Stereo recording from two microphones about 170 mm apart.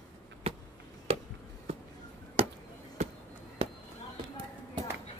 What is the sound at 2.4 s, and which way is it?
Basketball bounce, 35° right (ahead or behind).